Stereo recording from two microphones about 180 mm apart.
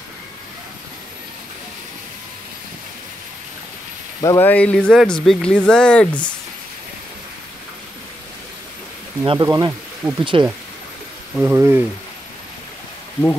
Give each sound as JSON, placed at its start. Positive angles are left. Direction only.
{"t": 4.2, "sound": "speech", "side_deg": 15}
{"t": 9.2, "sound": "speech", "side_deg": -25}
{"t": 10.3, "sound": "speech", "side_deg": -30}
{"t": 11.3, "sound": "speech", "side_deg": -10}